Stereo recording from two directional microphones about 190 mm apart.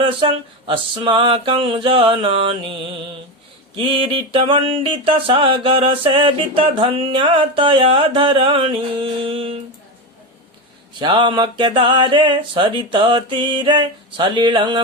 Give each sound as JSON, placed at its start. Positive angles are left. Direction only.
{"t": 0.0, "sound": "music", "side_deg": -30}
{"t": 11.0, "sound": "music", "side_deg": -25}